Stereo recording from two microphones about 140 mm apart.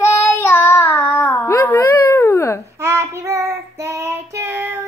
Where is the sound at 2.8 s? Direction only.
20° right (ahead or behind).